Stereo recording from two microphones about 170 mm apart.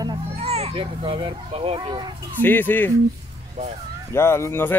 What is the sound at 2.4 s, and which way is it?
Speech, 10° left (ahead or behind).